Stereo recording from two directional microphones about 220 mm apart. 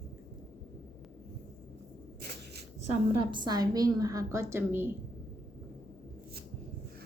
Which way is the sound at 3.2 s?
20° right (ahead or behind).